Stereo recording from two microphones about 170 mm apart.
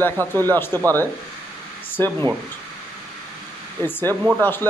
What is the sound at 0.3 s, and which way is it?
Speech, 10° left (ahead or behind).